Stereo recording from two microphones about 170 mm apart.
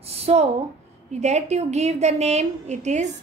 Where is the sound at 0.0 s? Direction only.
35° right (ahead or behind).